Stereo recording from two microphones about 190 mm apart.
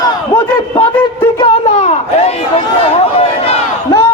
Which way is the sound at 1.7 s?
35° left (ahead or behind).